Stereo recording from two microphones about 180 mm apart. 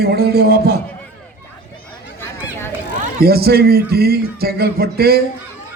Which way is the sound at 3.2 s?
60° right (ahead or behind).